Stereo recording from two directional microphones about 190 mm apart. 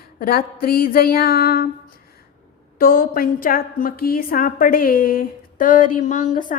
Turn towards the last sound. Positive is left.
turn(degrees=45)  # may be behind; listen again after turning